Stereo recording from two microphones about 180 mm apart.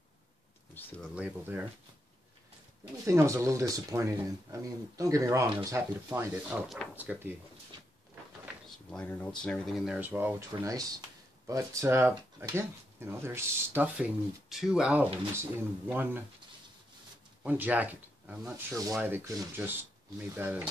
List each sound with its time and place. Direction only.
0.7 s speech: 10° left (ahead or behind)
1.1 s speech: 10° right (ahead or behind)
3.1 s speech: 15° right (ahead or behind)
8.6 s speech: 5° left (ahead or behind); by 16.2 s 10° right (ahead or behind)
17.4 s speech: 10° right (ahead or behind)